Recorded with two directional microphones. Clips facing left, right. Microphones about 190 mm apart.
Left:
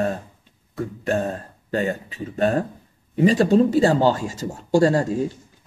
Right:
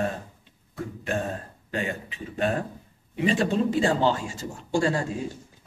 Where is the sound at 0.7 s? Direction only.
40° left (ahead or behind).